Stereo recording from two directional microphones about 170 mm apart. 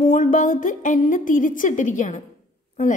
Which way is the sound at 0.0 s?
50° left (ahead or behind).